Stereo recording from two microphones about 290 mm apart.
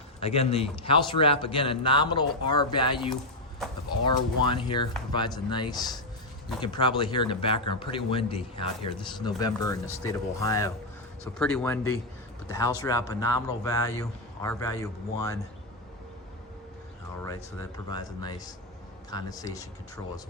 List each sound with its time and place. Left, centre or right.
0.2 s a man's voice: left
3.6 s a sound: centre
4.0 s a man's voice: centre
17.2 s a man's voice: centre